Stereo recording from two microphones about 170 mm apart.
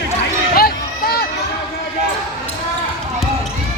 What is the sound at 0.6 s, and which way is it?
Run, 65° left (ahead or behind).